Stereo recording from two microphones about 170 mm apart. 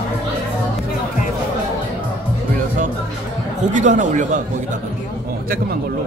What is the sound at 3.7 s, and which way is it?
Speech, 45° right (ahead or behind).